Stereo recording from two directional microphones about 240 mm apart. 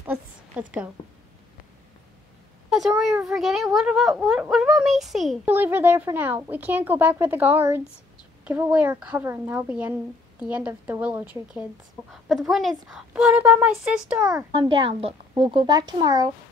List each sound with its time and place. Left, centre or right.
0.0 s a sound: centre
2.7 s speech: centre
14.3 s a child's voice: right